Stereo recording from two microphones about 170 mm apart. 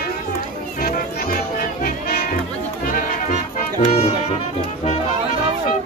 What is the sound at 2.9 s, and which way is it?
Music, 50° left (ahead or behind).